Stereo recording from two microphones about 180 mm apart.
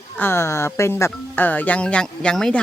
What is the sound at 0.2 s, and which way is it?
Speech, 15° left (ahead or behind).